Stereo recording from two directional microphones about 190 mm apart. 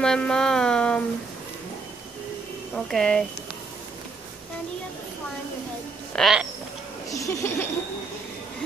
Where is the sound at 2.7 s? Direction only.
5° left (ahead or behind).